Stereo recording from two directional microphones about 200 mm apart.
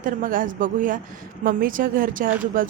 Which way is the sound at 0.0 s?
45° right (ahead or behind).